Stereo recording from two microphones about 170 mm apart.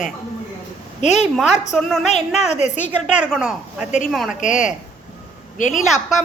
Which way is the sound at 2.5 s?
40° left (ahead or behind).